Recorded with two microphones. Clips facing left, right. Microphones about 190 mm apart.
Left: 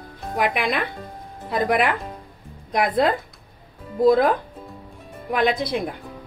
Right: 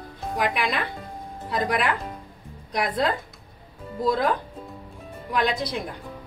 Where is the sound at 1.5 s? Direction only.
55° left (ahead or behind).